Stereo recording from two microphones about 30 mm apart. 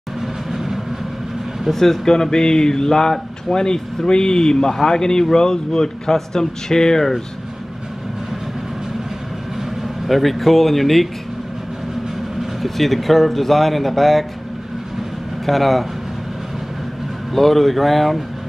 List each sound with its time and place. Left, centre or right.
0.5 s vehicle: centre
1.7 s speech: centre
10.0 s speech: centre
12.6 s speech: centre
15.4 s speech: centre
17.3 s speech: centre